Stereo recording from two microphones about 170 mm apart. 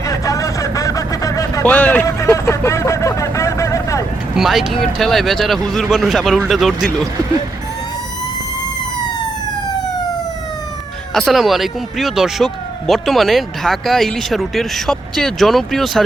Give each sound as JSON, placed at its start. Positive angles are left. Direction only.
{"t": 0.0, "sound": "a sound", "side_deg": 20}
{"t": 4.4, "sound": "speech", "side_deg": 0}
{"t": 11.1, "sound": "speech", "side_deg": 0}